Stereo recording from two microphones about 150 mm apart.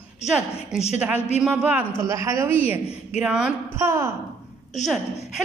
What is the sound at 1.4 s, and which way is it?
A woman's voice, 5° right (ahead or behind).